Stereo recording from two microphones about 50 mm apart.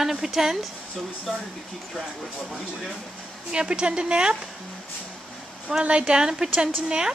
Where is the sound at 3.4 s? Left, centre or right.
Centre.